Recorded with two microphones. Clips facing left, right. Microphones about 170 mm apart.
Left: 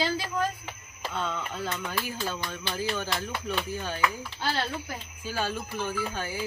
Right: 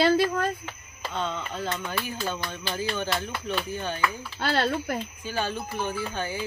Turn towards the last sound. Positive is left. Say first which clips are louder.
# right 1 dB
turn(degrees=5)  # may be behind; listen again after turning